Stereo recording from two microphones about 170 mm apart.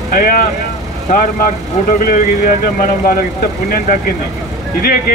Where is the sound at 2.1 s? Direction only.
55° left (ahead or behind).